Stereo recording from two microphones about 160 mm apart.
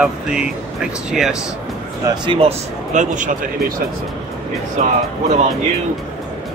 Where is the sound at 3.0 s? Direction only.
50° right (ahead or behind).